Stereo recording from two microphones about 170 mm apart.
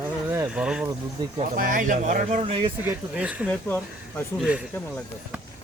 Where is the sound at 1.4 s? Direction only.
55° right (ahead or behind); by 2.7 s 35° right (ahead or behind).